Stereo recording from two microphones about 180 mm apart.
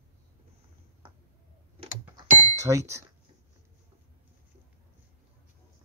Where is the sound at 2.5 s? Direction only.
15° right (ahead or behind).